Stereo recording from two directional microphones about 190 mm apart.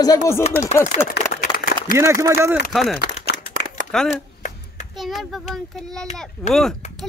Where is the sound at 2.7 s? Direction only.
Centre (ahead or behind).